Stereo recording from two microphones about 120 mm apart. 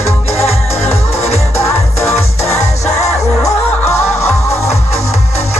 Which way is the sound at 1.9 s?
65° left (ahead or behind).